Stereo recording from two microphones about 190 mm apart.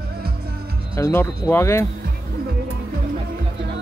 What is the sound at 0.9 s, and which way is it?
Speech, 15° left (ahead or behind).